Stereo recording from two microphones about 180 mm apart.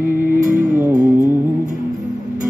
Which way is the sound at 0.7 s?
15° right (ahead or behind).